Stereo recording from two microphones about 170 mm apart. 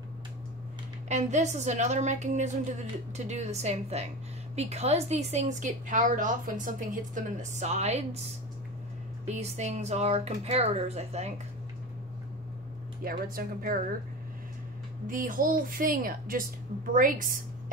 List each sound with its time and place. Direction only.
1.0 s a woman's voice: 45° right (ahead or behind)
9.2 s speech: 40° right (ahead or behind)
13.0 s a woman's voice: 60° right (ahead or behind)
15.0 s a woman's voice: 55° right (ahead or behind)